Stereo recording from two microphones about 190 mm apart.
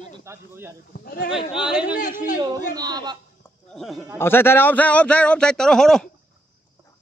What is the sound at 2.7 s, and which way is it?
Speech, 20° right (ahead or behind).